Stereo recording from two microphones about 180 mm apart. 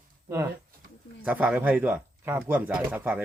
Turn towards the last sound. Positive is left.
turn(degrees=-10)  # may be behind; listen again after turning